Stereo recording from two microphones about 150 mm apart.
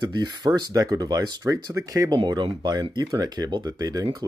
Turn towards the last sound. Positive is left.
turn(degrees=-25)  # may be behind; listen again after turning